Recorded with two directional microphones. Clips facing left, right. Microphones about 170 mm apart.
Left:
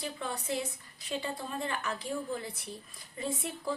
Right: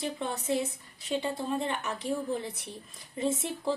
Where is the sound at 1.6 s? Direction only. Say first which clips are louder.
Right 3 dB; 25° right (ahead or behind).